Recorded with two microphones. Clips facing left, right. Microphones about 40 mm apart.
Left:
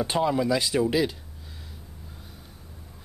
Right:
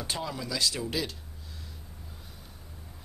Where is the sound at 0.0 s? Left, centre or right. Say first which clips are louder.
Left 11 dB; left.